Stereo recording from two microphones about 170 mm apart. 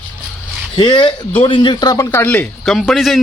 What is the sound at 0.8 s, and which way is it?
A man's voice, 25° left (ahead or behind).